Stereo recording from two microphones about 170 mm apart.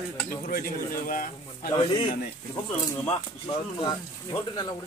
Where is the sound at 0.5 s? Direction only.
60° left (ahead or behind).